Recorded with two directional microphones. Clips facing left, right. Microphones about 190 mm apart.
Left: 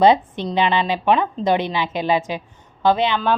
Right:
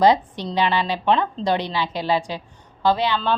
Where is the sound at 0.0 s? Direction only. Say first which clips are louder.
Left 2 dB; 20° left (ahead or behind).